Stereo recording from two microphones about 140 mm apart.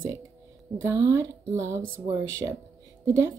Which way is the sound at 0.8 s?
20° right (ahead or behind).